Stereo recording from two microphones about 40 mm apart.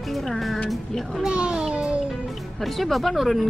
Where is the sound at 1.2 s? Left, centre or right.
Right.